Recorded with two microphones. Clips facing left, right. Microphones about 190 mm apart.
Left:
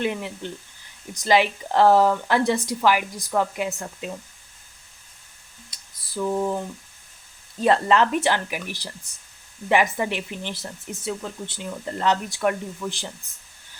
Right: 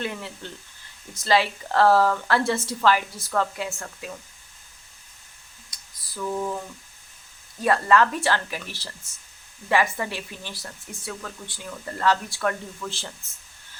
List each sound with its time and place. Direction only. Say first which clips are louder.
0.0 s speech: left 5 dB; 15° left (ahead or behind)
5.7 s a sound: even; 25° left (ahead or behind)
6.1 s speech: left 4 dB; 25° left (ahead or behind)
7.6 s speech: left 1 dB; 25° left (ahead or behind)